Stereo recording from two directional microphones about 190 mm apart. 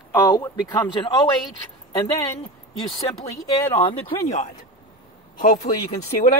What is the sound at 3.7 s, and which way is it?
Speech, 30° left (ahead or behind).